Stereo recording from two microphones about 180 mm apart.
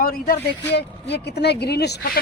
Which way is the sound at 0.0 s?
55° left (ahead or behind).